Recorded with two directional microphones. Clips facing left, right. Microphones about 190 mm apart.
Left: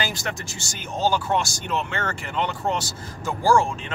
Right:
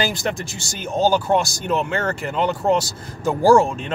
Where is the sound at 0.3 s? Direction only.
35° right (ahead or behind).